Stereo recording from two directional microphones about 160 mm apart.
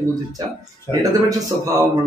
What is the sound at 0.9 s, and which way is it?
Speech, 15° left (ahead or behind).